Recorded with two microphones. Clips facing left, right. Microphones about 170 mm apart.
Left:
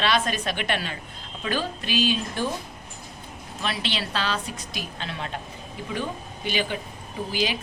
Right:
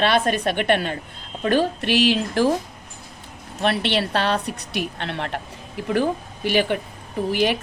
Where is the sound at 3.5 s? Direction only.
60° right (ahead or behind).